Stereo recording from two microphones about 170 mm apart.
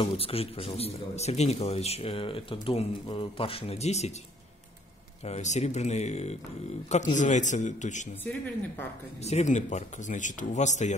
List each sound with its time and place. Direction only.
0.0 s speech: 35° left (ahead or behind)
5.2 s speech: 40° left (ahead or behind)
8.2 s a woman's voice: 10° left (ahead or behind)
9.2 s speech: 40° left (ahead or behind)